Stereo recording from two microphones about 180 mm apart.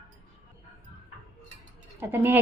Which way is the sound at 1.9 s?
15° right (ahead or behind).